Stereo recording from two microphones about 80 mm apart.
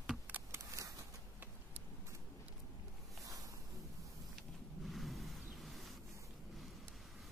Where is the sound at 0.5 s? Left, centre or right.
Right.